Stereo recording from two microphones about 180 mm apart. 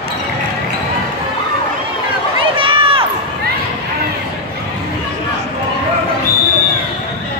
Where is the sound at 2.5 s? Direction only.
30° right (ahead or behind).